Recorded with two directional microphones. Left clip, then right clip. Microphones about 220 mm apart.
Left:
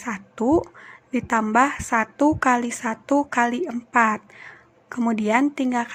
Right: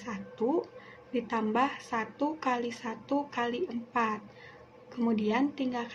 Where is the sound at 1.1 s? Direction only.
45° left (ahead or behind).